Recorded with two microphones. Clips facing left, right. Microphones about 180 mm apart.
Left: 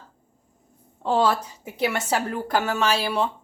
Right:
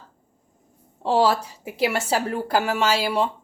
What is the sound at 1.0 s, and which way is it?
A woman's voice, 30° right (ahead or behind).